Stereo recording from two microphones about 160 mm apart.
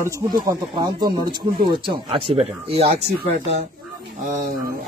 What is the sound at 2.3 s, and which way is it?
Speech, 35° right (ahead or behind).